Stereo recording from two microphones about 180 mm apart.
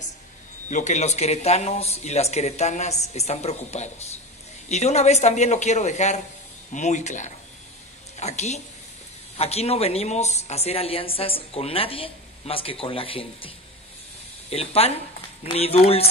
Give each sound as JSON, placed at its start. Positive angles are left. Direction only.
{"t": 0.7, "sound": "a woman's voice", "side_deg": 45}
{"t": 14.5, "sound": "a woman's voice", "side_deg": 35}